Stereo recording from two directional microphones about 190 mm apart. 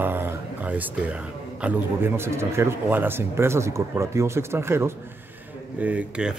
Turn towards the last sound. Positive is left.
turn(degrees=-5)  # may be behind; listen again after turning